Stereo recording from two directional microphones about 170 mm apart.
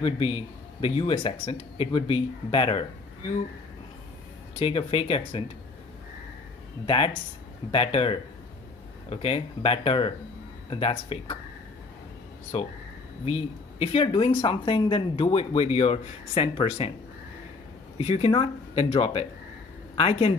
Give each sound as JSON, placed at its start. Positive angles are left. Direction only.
{"t": 0.0, "sound": "speech", "side_deg": 35}
{"t": 4.6, "sound": "speech", "side_deg": 35}
{"t": 7.7, "sound": "speech", "side_deg": 35}
{"t": 12.5, "sound": "speech", "side_deg": 35}
{"t": 17.9, "sound": "speech", "side_deg": 35}